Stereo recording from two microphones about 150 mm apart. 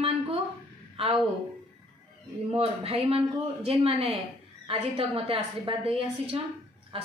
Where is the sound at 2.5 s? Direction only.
40° right (ahead or behind).